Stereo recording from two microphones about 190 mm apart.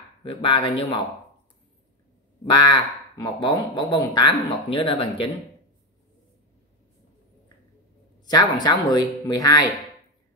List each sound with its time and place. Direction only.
0.2 s speech: 30° left (ahead or behind)
2.4 s speech: 25° left (ahead or behind)
8.3 s speech: 20° left (ahead or behind)